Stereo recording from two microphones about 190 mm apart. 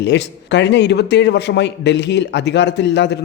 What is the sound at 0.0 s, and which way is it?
A man's voice, 65° left (ahead or behind).